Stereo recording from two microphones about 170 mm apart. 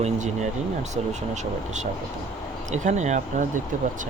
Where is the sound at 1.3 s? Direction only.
45° right (ahead or behind).